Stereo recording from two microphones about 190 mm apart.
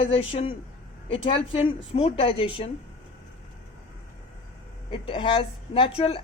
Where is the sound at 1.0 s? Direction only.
30° left (ahead or behind).